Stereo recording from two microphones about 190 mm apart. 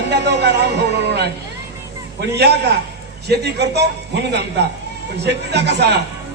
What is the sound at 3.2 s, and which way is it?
Speech, 60° right (ahead or behind).